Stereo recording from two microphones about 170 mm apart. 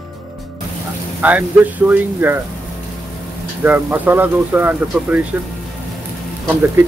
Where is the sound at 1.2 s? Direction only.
10° right (ahead or behind).